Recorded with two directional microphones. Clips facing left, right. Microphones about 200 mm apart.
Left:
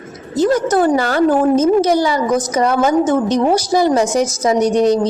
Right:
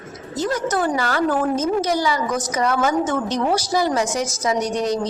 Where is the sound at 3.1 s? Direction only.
15° left (ahead or behind).